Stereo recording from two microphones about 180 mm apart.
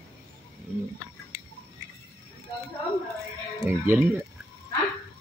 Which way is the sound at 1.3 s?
15° right (ahead or behind).